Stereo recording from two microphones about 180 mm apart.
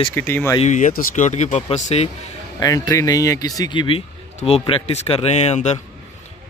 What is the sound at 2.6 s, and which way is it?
Speech, 20° left (ahead or behind).